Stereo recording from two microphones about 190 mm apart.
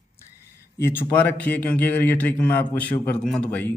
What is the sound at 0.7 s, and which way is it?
A man's voice, 15° left (ahead or behind).